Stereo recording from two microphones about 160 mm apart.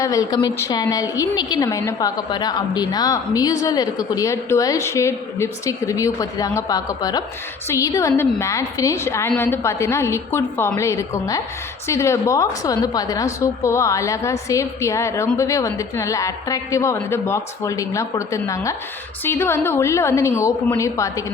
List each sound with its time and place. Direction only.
0.0 s a woman's voice: 20° left (ahead or behind)